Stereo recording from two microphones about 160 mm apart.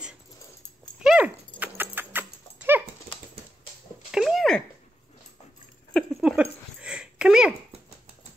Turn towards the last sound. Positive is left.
turn(degrees=-5)  # may be behind; listen again after turning